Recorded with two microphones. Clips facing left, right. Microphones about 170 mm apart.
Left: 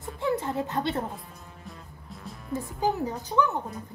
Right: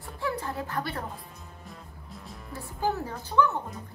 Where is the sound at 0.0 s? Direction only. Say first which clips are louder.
Left 4 dB; 20° left (ahead or behind).